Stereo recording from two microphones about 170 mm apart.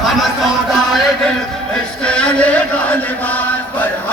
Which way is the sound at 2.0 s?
5° left (ahead or behind).